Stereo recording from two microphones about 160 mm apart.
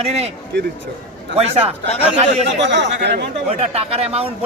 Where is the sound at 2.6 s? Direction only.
90° right.